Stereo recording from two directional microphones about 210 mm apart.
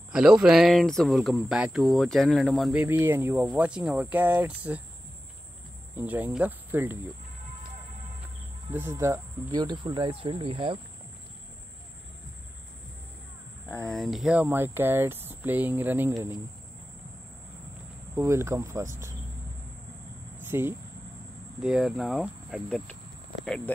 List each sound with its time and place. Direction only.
0.1 s speech: 5° right (ahead or behind)
5.9 s speech: 10° right (ahead or behind)
8.7 s speech: 10° right (ahead or behind)
13.7 s speech: 5° left (ahead or behind); by 16.3 s 15° right (ahead or behind)
18.1 s speech: 15° right (ahead or behind)
20.4 s speech: 10° right (ahead or behind)